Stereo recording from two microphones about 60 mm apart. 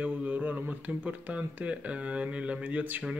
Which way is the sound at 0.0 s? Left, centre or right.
Right.